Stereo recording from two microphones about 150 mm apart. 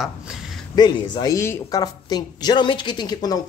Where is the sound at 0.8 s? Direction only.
30° left (ahead or behind).